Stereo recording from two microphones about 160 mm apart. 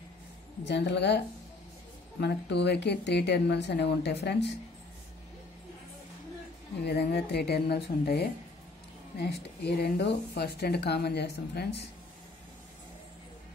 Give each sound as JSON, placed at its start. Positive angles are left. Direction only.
{"t": 0.7, "sound": "speech", "side_deg": 90}
{"t": 6.8, "sound": "speech", "side_deg": 85}